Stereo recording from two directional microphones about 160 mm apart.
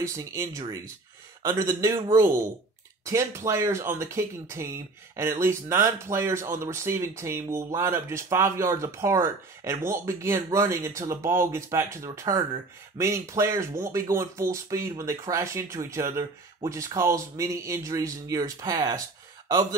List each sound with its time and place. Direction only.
0.0 s speech: 20° right (ahead or behind)